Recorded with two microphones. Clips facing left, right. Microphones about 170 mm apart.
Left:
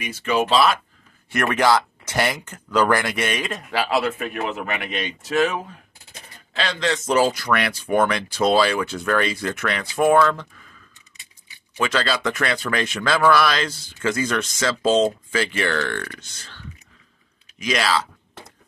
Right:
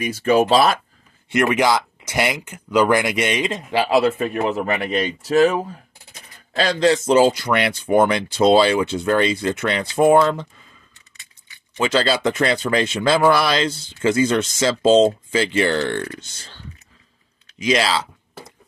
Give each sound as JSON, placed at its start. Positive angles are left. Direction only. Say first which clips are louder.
{"t": 0.0, "sound": "speech", "louder": "right 6 dB", "side_deg": -40}
{"t": 1.3, "sound": "speech", "louder": "right 1 dB", "side_deg": -15}
{"t": 11.8, "sound": "speech", "louder": "right 4 dB", "side_deg": -30}